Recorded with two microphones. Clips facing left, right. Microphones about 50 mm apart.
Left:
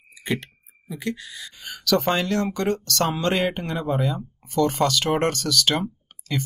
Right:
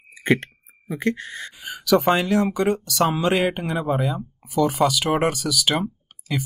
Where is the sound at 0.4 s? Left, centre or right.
Right.